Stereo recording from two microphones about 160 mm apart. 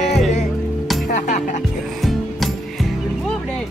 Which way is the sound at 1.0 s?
50° left (ahead or behind).